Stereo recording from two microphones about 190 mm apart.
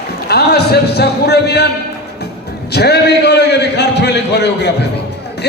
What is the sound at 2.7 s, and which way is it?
A man's voice, 60° left (ahead or behind).